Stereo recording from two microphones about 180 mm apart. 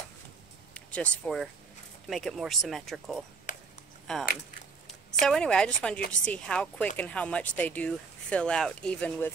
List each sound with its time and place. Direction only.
0.7 s vehicle: 5° left (ahead or behind)
1.2 s speech: centre (ahead or behind)
3.5 s a sound: 45° left (ahead or behind)
4.1 s speech: centre (ahead or behind)